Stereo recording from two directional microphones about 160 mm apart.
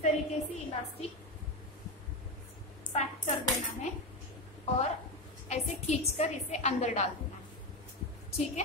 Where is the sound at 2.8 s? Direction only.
45° left (ahead or behind).